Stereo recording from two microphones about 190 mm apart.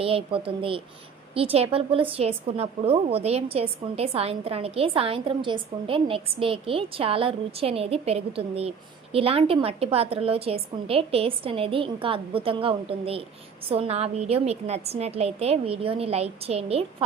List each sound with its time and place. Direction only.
0.0 s a woman's voice: 30° right (ahead or behind)